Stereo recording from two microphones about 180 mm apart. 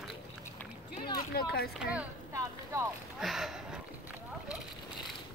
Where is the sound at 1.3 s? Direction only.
60° left (ahead or behind).